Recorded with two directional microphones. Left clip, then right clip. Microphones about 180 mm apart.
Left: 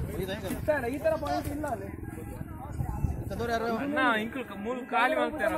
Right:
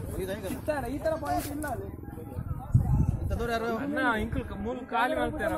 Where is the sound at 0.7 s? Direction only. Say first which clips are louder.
Left 3 dB; 25° left (ahead or behind).